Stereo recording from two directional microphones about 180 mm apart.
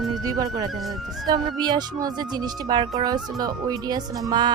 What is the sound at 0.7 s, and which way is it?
Speech, centre (ahead or behind).